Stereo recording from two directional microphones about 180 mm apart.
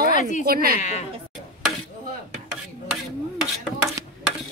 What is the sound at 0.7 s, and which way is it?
Speech, 40° left (ahead or behind).